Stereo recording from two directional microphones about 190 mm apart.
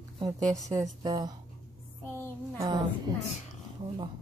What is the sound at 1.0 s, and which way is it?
Speech, 20° right (ahead or behind).